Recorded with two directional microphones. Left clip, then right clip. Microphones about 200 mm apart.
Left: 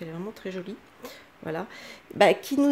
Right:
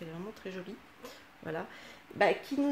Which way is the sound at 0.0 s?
25° left (ahead or behind).